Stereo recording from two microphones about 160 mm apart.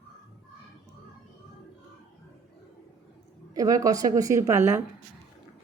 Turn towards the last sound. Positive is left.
turn(degrees=-15)  # may be behind; listen again after turning